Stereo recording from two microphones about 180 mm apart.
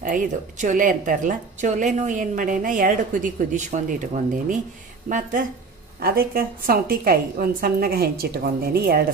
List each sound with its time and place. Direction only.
0.0 s a woman's voice: 45° right (ahead or behind)